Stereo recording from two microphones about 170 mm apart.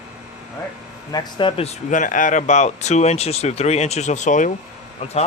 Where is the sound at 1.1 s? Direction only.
25° left (ahead or behind); by 4.5 s 45° left (ahead or behind).